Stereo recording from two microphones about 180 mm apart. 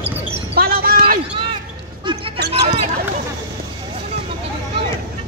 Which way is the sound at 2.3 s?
65° right (ahead or behind).